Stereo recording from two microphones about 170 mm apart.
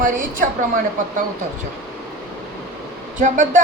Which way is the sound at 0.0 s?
50° right (ahead or behind).